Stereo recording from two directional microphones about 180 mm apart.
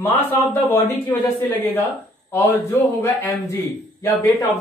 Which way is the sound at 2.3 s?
15° left (ahead or behind).